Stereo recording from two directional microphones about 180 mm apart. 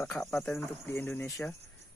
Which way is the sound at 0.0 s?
10° left (ahead or behind).